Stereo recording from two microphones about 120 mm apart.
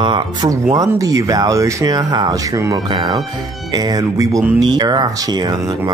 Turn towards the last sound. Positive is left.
turn(degrees=-35)  # may be behind; listen again after turning